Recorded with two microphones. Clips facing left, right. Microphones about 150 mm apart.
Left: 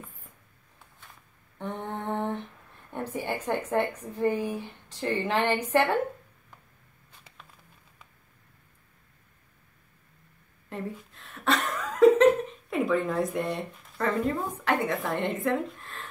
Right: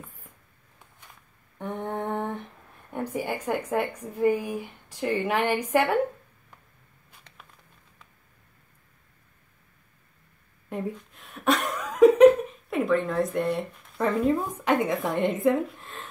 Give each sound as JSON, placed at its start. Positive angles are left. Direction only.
{"t": 1.6, "sound": "humming", "side_deg": -10}
{"t": 2.9, "sound": "a woman's voice", "side_deg": -15}
{"t": 11.1, "sound": "chuckle", "side_deg": -15}
{"t": 12.6, "sound": "speech", "side_deg": 0}
{"t": 13.9, "sound": "a woman's voice", "side_deg": -15}